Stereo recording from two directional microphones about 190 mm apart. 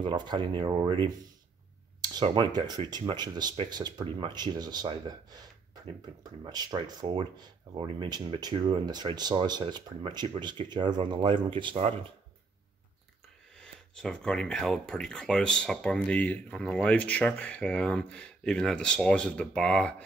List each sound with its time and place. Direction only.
0.0 s speech: 25° right (ahead or behind)
13.6 s speech: 5° left (ahead or behind)